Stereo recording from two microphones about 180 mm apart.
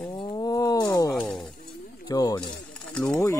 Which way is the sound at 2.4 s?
5° left (ahead or behind).